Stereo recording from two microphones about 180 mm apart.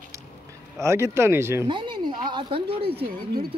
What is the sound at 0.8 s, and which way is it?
Speech, 15° right (ahead or behind).